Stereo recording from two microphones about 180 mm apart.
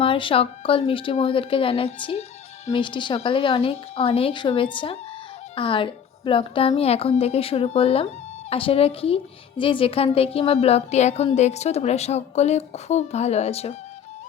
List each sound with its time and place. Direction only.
0.0 s a woman's voice: 30° left (ahead or behind)